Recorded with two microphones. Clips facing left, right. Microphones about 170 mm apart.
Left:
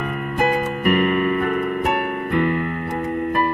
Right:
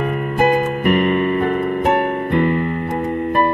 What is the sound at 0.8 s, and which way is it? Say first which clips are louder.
Keyboard: right 1 dB; 30° right (ahead or behind).